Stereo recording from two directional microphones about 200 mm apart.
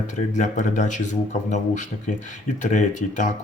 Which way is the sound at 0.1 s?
40° left (ahead or behind).